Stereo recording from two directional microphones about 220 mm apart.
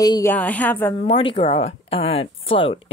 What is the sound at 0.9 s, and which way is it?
Speech, 25° left (ahead or behind).